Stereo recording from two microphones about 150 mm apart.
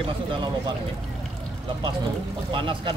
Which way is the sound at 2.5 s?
35° right (ahead or behind).